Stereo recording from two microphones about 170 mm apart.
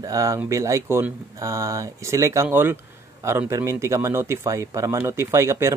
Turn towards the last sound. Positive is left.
turn(degrees=-15)  # may be behind; listen again after turning